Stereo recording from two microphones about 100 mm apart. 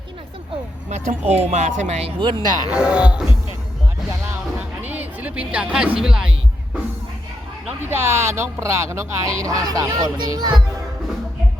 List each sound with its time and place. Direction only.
1.3 s speech: 90° right
2.2 s speech: 45° right (ahead or behind)
2.6 s speech: 10° right (ahead or behind)
4.8 s a sound: 20° right (ahead or behind)
6.0 s speech: 5° right (ahead or behind)
7.9 s speech: 25° right (ahead or behind); by 10.6 s 40° right (ahead or behind)